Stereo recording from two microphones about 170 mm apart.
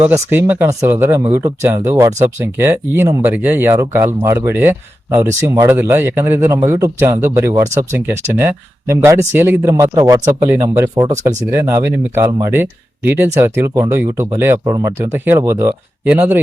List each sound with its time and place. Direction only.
0.0 s speech: 10° right (ahead or behind)
14.6 s speech: 25° right (ahead or behind)